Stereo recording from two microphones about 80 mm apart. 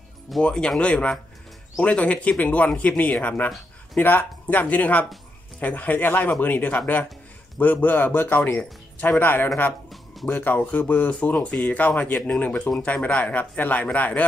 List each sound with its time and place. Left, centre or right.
0.4 s a man's voice: centre